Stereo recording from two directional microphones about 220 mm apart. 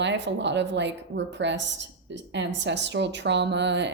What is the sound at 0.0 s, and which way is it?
A woman's voice, 55° right (ahead or behind).